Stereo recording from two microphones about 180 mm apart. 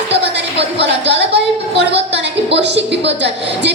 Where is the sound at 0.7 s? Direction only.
75° right (ahead or behind).